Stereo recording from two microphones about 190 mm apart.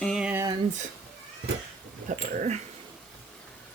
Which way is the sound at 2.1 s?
40° right (ahead or behind).